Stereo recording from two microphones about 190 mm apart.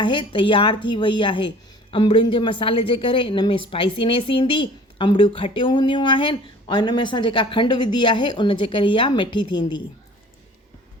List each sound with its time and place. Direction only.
0.0 s speech: 25° left (ahead or behind)